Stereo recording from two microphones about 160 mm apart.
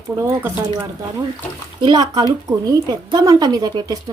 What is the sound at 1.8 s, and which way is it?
Speech, 30° right (ahead or behind).